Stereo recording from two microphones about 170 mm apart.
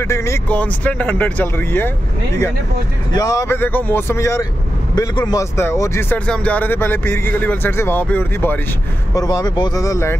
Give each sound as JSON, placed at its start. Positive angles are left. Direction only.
{"t": 0.0, "sound": "speech", "side_deg": 15}
{"t": 3.1, "sound": "speech", "side_deg": 20}
{"t": 9.1, "sound": "speech", "side_deg": 20}